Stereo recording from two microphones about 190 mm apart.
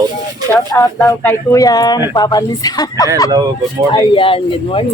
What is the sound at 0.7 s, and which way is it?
Speech, 15° left (ahead or behind).